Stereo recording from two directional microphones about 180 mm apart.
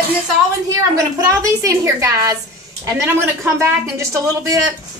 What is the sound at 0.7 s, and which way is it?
A woman's voice, 20° right (ahead or behind).